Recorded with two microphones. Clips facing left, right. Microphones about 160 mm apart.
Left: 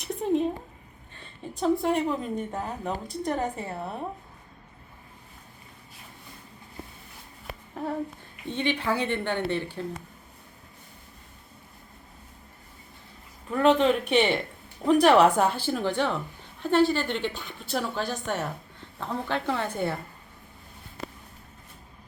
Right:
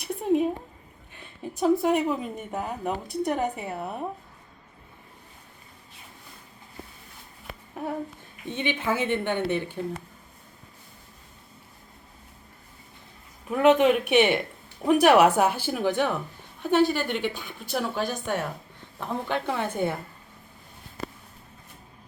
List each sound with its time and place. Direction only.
0.0 s a sound: 5° right (ahead or behind)
1.1 s a woman's voice: 10° right (ahead or behind)
8.4 s a woman's voice: 15° right (ahead or behind)
13.5 s a woman's voice: 15° right (ahead or behind)